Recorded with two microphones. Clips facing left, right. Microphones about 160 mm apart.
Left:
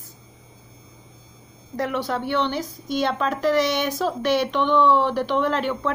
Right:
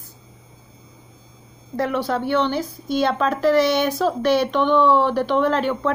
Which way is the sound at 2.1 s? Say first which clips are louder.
Right 4 dB; 45° right (ahead or behind).